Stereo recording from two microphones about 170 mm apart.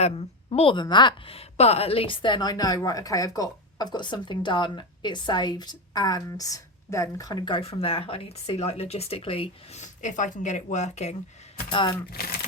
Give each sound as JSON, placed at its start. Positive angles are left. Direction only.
{"t": 0.0, "sound": "a woman's voice", "side_deg": 35}
{"t": 11.7, "sound": "a woman's voice", "side_deg": 30}
{"t": 12.2, "sound": "speech", "side_deg": 60}